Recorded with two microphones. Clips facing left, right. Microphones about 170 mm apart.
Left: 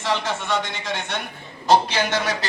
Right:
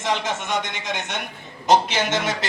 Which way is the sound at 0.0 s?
20° right (ahead or behind).